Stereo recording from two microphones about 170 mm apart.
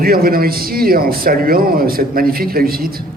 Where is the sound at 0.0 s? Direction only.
60° right (ahead or behind).